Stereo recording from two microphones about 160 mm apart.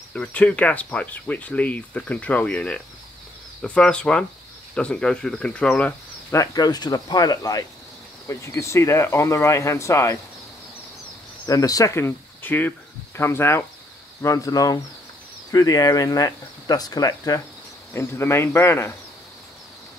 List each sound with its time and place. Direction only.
0.1 s speech: 5° left (ahead or behind)
6.3 s speech: 20° left (ahead or behind)
11.4 s speech: 20° left (ahead or behind)